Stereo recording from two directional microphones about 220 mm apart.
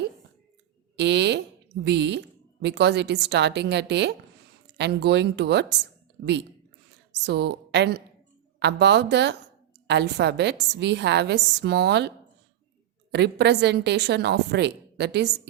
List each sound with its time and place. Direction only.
0.9 s a woman's voice: 50° right (ahead or behind)
7.1 s a woman's voice: 50° right (ahead or behind)